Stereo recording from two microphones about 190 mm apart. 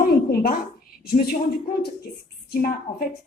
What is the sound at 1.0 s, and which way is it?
Speech, 50° left (ahead or behind).